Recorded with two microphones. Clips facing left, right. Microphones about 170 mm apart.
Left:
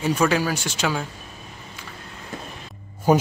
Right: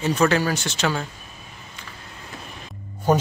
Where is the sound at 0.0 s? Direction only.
10° left (ahead or behind).